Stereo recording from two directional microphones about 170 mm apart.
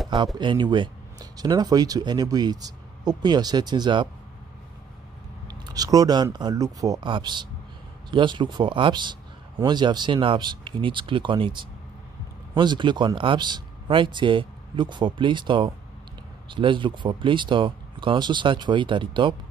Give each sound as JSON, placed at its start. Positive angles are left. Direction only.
{"t": 0.4, "sound": "speech", "side_deg": -25}
{"t": 5.5, "sound": "speech", "side_deg": -20}